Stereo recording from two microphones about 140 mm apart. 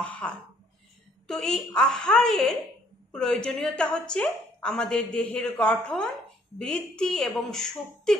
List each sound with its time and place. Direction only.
0.2 s a woman's voice: 5° left (ahead or behind)